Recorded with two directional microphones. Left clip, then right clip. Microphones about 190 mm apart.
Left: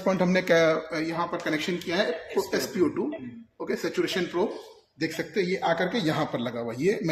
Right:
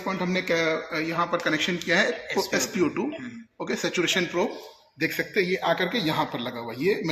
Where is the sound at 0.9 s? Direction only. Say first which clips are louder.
Right 1 dB; 20° left (ahead or behind).